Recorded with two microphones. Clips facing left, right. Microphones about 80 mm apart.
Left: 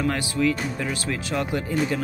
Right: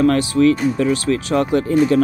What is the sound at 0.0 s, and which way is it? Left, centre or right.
Speech, right.